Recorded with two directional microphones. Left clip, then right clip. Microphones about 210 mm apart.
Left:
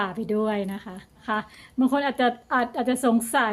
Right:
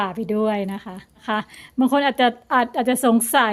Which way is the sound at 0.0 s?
25° right (ahead or behind).